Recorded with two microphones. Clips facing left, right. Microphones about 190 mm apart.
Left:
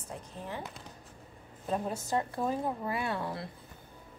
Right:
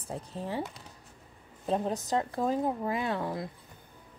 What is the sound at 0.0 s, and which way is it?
Speech, 30° right (ahead or behind).